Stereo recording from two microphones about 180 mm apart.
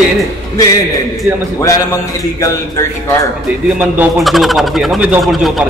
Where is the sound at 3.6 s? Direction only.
10° right (ahead or behind).